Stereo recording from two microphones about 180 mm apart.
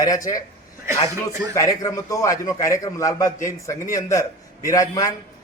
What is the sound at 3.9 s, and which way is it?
A man's voice, 20° left (ahead or behind).